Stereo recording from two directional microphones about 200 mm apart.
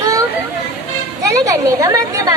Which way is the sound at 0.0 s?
15° right (ahead or behind).